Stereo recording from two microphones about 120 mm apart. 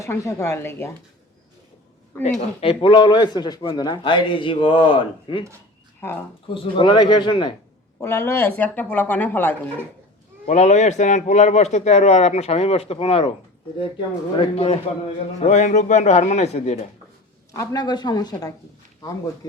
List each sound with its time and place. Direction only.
0.0 s speech: 25° left (ahead or behind)
2.1 s speech: 20° left (ahead or behind)
2.6 s a man's voice: 45° left (ahead or behind)
6.0 s speech: 20° left (ahead or behind)
6.5 s a man's voice: 45° left (ahead or behind)
7.9 s speech: 20° left (ahead or behind)
10.4 s a man's voice: 70° left (ahead or behind)
14.3 s a man's voice: 55° left (ahead or behind)
15.4 s a man's voice: 75° left (ahead or behind)
17.5 s a man's voice: 25° left (ahead or behind)